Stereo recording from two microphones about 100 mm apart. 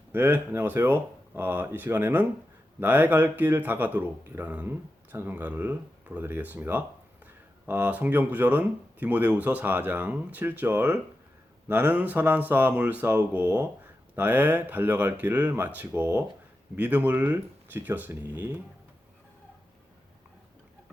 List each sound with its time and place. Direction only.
0.1 s a man's voice: 20° right (ahead or behind)